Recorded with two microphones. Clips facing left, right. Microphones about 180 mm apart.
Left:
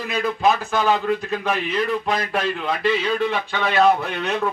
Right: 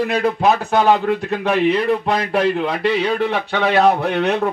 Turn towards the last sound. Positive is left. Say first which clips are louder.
# right 6 dB
turn(degrees=-60)  # may be behind; listen again after turning